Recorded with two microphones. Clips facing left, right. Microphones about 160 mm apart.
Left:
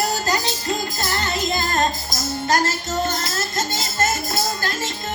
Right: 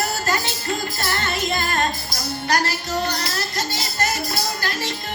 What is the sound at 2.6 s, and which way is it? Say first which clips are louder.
Music: left 1 dB; 45° left (ahead or behind).